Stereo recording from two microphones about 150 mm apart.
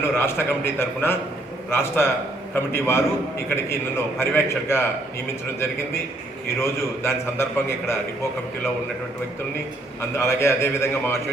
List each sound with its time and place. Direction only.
0.0 s a man's voice: 15° left (ahead or behind)
6.6 s a man's voice: 15° left (ahead or behind)
10.2 s a man's voice: 20° left (ahead or behind)